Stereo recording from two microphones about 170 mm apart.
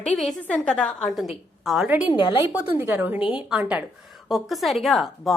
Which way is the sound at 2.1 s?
30° left (ahead or behind).